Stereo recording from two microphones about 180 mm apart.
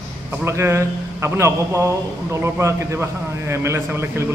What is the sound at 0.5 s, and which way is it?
A man's voice, 15° right (ahead or behind).